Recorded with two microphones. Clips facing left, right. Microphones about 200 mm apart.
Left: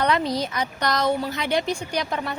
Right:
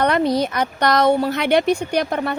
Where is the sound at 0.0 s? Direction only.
55° right (ahead or behind).